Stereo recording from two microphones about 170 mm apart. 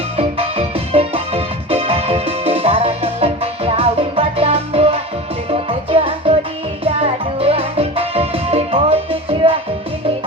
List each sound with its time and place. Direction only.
0.2 s music: 35° right (ahead or behind)